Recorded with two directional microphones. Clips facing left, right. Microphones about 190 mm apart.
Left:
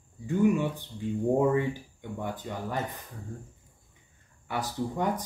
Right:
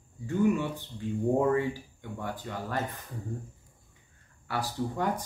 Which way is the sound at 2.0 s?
20° left (ahead or behind).